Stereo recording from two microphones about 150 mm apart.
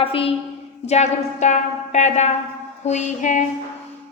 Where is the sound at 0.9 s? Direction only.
50° left (ahead or behind).